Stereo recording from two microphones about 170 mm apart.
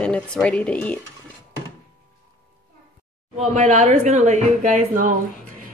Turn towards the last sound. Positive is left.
turn(degrees=-50)  # may be behind; listen again after turning